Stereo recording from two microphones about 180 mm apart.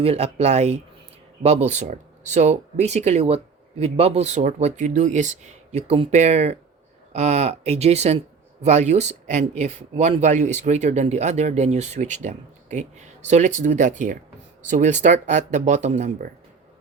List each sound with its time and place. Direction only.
0.0 s speech: 35° right (ahead or behind)